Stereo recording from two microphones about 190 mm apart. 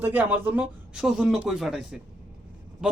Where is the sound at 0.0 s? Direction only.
10° right (ahead or behind).